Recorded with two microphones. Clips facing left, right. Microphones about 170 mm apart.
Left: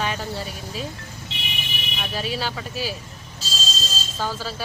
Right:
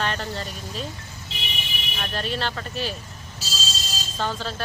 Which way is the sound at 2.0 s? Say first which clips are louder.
Even; 5° left (ahead or behind).